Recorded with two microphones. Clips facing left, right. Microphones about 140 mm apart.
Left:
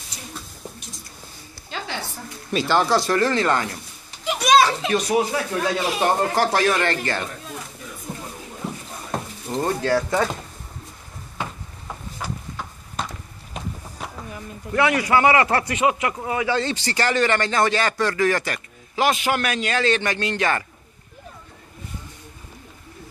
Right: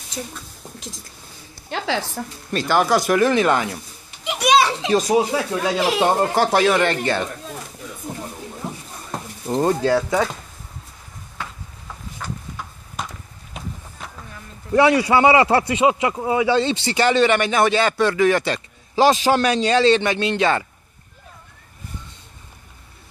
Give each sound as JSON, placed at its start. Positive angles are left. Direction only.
{"t": 0.7, "sound": "a woman's voice", "side_deg": -90}
{"t": 2.5, "sound": "speech", "side_deg": 0}
{"t": 2.8, "sound": "speech", "side_deg": -10}
{"t": 4.2, "sound": "children playing", "side_deg": -15}
{"t": 5.8, "sound": "a woman's voice", "side_deg": -80}
{"t": 6.0, "sound": "speech", "side_deg": -15}
{"t": 9.5, "sound": "a man's voice", "side_deg": -25}
{"t": 9.9, "sound": "speech", "side_deg": -5}
{"t": 11.3, "sound": "a sound", "side_deg": 20}
{"t": 12.2, "sound": "a sound", "side_deg": 10}
{"t": 12.9, "sound": "a sound", "side_deg": -10}
{"t": 14.7, "sound": "a man's voice", "side_deg": -30}